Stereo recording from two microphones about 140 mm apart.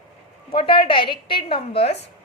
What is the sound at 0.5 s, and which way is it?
A woman's voice, 35° left (ahead or behind).